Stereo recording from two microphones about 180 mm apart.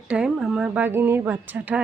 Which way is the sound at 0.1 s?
5° right (ahead or behind).